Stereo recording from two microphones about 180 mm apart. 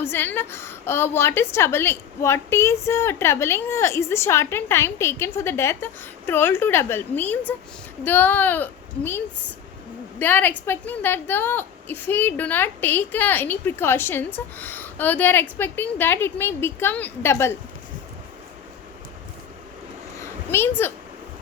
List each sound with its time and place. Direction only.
0.0 s a woman's voice: 10° left (ahead or behind)
20.5 s a woman's voice: 15° left (ahead or behind)